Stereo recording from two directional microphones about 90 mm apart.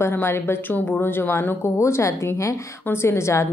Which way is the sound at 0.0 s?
25° left (ahead or behind).